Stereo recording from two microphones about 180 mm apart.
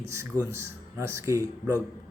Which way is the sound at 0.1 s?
15° right (ahead or behind).